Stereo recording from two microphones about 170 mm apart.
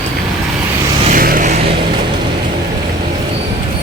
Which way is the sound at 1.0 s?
55° right (ahead or behind).